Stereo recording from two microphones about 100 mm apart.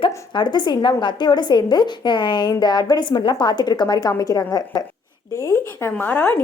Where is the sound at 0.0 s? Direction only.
50° left (ahead or behind).